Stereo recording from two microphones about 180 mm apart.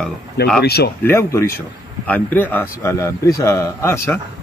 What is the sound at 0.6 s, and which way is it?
Speech, 60° left (ahead or behind).